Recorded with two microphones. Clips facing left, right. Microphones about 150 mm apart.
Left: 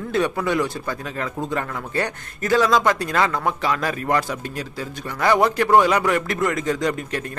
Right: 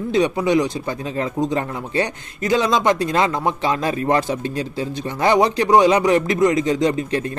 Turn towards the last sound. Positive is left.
turn(degrees=-25)  # may be behind; listen again after turning